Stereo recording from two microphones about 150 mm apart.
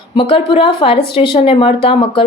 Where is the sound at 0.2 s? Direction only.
40° left (ahead or behind).